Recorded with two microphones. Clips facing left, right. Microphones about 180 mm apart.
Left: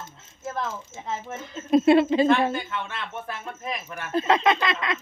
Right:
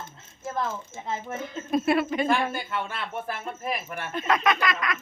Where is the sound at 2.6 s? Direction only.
5° right (ahead or behind).